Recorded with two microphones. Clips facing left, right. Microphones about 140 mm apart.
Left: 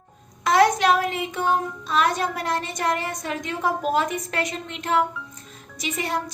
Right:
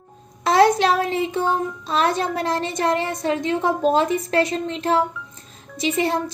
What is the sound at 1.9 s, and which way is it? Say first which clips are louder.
A woman's voice: right 1 dB; 30° right (ahead or behind).